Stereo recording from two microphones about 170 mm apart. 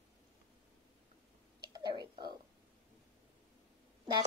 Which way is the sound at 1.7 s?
25° right (ahead or behind).